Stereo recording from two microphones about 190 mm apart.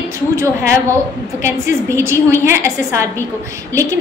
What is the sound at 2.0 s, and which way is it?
A woman's voice, 15° right (ahead or behind).